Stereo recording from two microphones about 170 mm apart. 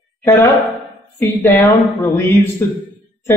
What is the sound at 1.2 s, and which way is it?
A man's voice, 10° left (ahead or behind).